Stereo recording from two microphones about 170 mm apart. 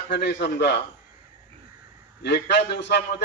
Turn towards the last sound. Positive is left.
turn(degrees=80)